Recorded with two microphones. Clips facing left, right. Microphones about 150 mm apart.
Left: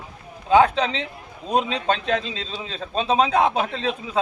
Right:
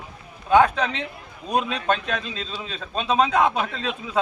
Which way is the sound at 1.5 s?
25° left (ahead or behind).